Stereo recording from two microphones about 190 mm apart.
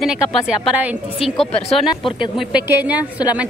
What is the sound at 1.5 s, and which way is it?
Speech, 30° left (ahead or behind).